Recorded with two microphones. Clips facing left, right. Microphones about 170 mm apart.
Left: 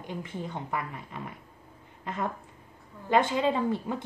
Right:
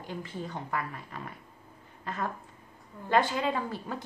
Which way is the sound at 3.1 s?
20° left (ahead or behind).